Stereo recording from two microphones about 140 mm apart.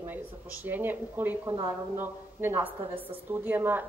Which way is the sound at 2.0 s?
15° right (ahead or behind).